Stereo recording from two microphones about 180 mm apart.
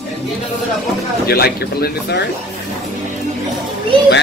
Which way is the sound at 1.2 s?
60° left (ahead or behind).